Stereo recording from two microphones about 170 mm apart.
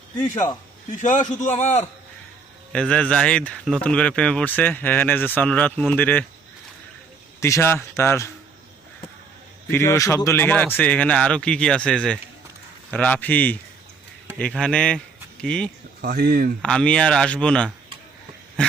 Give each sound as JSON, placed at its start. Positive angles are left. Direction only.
{"t": 1.0, "sound": "a man's voice", "side_deg": 45}
{"t": 2.7, "sound": "speech", "side_deg": 5}
{"t": 7.3, "sound": "speech", "side_deg": 15}
{"t": 9.7, "sound": "speech", "side_deg": 15}
{"t": 16.0, "sound": "speech", "side_deg": -60}
{"t": 16.6, "sound": "speech", "side_deg": 5}